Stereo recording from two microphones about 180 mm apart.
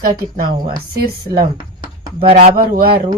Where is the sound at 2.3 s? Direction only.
35° right (ahead or behind).